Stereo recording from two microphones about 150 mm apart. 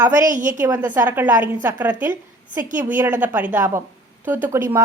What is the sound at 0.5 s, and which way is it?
A woman's voice, 15° right (ahead or behind).